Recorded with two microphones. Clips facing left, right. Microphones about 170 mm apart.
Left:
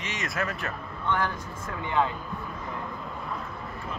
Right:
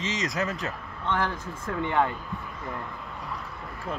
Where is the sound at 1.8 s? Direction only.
55° right (ahead or behind).